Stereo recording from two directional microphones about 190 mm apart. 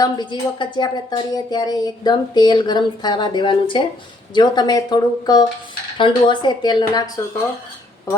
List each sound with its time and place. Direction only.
0.0 s speech: 25° left (ahead or behind)